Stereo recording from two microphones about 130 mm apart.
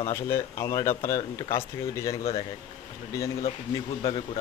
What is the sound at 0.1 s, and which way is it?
Speech, 25° left (ahead or behind).